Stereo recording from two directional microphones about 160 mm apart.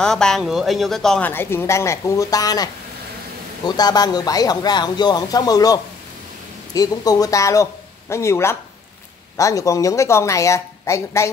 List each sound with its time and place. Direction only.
0.0 s speech: 5° left (ahead or behind)